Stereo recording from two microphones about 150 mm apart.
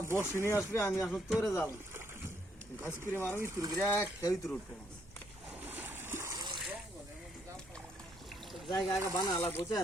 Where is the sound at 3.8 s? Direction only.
20° left (ahead or behind).